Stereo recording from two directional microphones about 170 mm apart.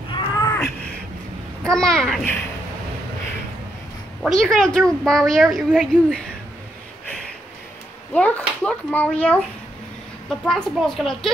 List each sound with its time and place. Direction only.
0.1 s a sound: 20° left (ahead or behind)
1.6 s a woman's voice: 5° left (ahead or behind)
4.2 s a woman's voice: centre (ahead or behind)
8.1 s a child's voice: 10° left (ahead or behind)
10.4 s a woman's voice: centre (ahead or behind)